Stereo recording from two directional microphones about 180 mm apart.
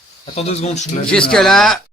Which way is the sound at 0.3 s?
35° left (ahead or behind).